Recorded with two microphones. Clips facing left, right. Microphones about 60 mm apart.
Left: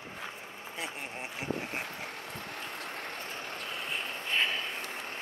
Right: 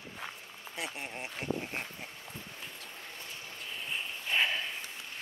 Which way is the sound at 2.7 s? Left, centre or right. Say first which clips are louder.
Left 7 dB; left.